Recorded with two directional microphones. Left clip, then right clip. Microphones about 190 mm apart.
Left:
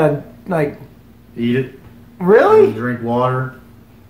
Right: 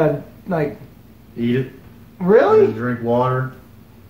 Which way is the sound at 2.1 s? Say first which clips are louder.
Left 3 dB; 35° left (ahead or behind).